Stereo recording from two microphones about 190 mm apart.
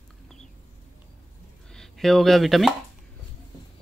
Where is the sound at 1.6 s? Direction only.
Centre (ahead or behind).